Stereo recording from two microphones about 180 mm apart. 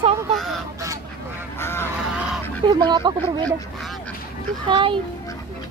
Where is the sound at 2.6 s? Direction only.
25° right (ahead or behind).